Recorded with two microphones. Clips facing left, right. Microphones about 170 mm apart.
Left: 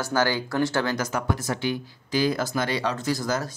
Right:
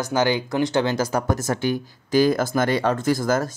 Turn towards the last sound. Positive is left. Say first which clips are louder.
# right 5 dB
turn(degrees=-50)  # may be behind; listen again after turning